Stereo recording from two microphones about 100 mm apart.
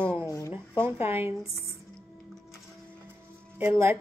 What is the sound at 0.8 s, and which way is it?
Speech, 25° right (ahead or behind).